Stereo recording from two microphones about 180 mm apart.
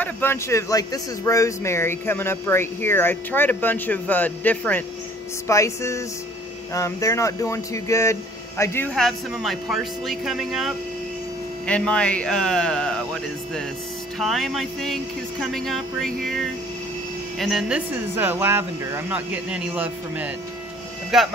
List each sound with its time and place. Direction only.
0.0 s a man's voice: 10° left (ahead or behind)
11.6 s a sound: 5° left (ahead or behind)
17.4 s speech: centre (ahead or behind)